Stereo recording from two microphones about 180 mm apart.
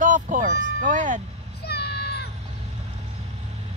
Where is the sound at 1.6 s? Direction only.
65° left (ahead or behind).